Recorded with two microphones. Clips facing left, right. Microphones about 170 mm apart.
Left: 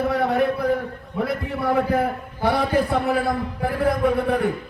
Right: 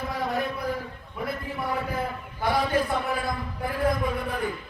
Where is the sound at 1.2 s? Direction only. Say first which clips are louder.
Left 7 dB; 65° left (ahead or behind).